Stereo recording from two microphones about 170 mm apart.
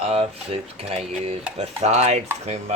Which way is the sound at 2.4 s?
40° right (ahead or behind).